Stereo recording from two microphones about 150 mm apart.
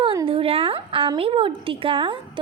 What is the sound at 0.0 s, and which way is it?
A woman's voice, 30° right (ahead or behind).